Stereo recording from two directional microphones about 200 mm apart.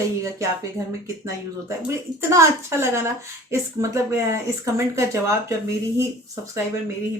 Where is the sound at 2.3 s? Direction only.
15° right (ahead or behind).